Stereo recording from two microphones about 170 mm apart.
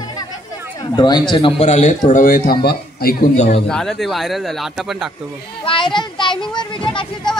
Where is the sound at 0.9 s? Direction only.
25° left (ahead or behind); by 2.5 s 55° left (ahead or behind).